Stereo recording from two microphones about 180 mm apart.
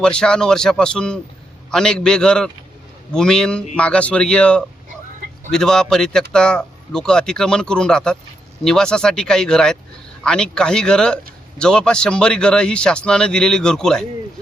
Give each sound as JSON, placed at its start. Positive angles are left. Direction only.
{"t": 0.0, "sound": "speech", "side_deg": 5}